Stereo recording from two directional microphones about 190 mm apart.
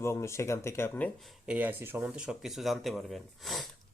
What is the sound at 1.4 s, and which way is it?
Speech, 10° right (ahead or behind).